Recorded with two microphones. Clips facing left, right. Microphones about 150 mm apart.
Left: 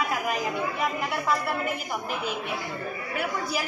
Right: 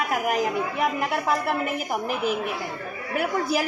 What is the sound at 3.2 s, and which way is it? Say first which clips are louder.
Speech: right 6 dB; 50° right (ahead or behind).